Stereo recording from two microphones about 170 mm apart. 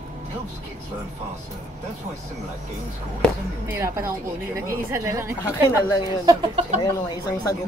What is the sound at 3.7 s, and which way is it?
A woman's voice, 15° right (ahead or behind).